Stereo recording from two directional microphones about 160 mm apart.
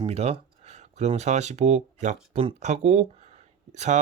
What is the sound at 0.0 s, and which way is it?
Speech, 40° right (ahead or behind).